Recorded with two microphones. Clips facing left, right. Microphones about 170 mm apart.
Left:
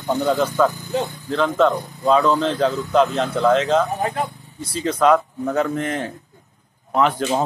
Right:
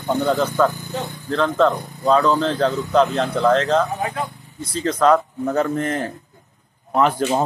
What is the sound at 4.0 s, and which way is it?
Speech, 35° left (ahead or behind).